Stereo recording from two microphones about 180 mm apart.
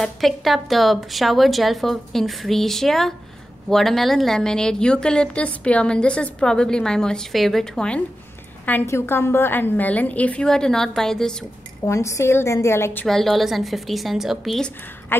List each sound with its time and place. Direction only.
0.0 s a woman's voice: centre (ahead or behind)
11.8 s a woman's voice: 15° left (ahead or behind)
13.0 s a woman's voice: centre (ahead or behind)